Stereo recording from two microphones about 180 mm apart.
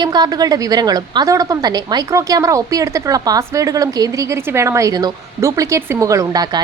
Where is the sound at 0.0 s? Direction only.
20° right (ahead or behind).